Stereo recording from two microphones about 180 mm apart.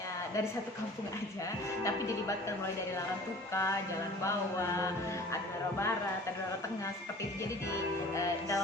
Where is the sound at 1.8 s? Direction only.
15° left (ahead or behind).